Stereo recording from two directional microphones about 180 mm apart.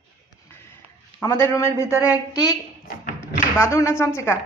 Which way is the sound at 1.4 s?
15° left (ahead or behind).